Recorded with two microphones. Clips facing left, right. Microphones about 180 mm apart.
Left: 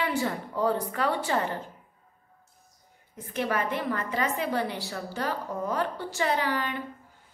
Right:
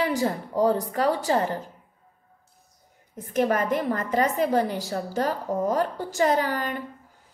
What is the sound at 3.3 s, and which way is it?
A woman's voice, 45° right (ahead or behind).